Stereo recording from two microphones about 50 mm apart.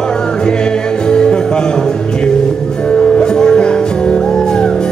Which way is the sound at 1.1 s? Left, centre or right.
Centre.